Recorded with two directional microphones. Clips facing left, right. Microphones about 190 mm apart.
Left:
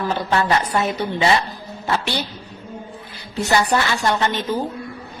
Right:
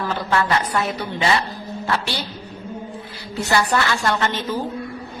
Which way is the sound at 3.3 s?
20° left (ahead or behind).